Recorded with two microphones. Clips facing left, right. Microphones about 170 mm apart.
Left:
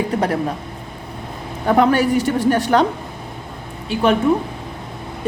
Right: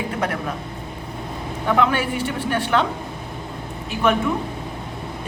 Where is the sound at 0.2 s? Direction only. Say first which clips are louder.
Left 5 dB; 35° left (ahead or behind).